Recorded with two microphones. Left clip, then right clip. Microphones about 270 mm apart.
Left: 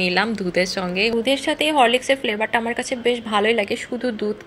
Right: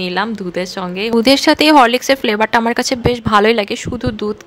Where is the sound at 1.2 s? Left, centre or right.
Right.